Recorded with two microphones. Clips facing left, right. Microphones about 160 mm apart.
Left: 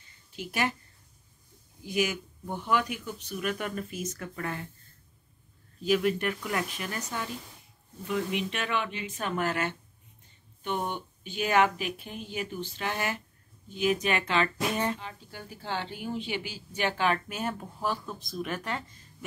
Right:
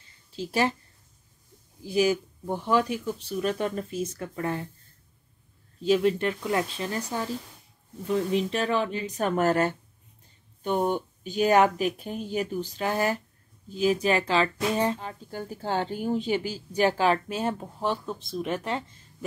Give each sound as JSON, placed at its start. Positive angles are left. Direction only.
{"t": 0.4, "sound": "speech", "side_deg": -30}
{"t": 1.8, "sound": "a woman's voice", "side_deg": -35}
{"t": 5.8, "sound": "a woman's voice", "side_deg": -25}
{"t": 10.9, "sound": "a woman's voice", "side_deg": -40}
{"t": 15.0, "sound": "a woman's voice", "side_deg": -45}